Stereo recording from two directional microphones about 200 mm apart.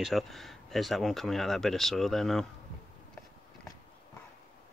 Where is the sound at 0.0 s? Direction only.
Centre (ahead or behind).